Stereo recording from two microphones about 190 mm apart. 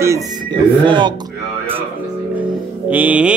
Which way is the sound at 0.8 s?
25° right (ahead or behind).